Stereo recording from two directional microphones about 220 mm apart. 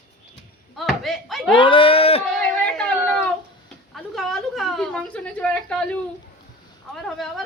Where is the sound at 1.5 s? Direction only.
25° left (ahead or behind).